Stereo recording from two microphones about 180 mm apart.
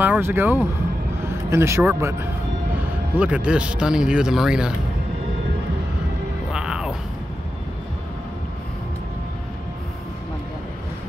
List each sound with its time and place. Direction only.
0.0 s speech: 10° right (ahead or behind)
3.2 s speech: 5° right (ahead or behind)
6.5 s music: 5° right (ahead or behind)